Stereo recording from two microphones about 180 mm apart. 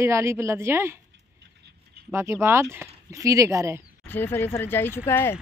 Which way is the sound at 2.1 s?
15° right (ahead or behind).